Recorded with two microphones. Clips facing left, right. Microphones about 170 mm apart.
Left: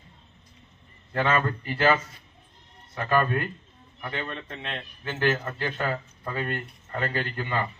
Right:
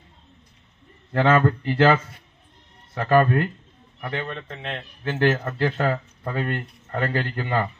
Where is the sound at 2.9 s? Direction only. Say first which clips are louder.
Right 6 dB; 50° right (ahead or behind).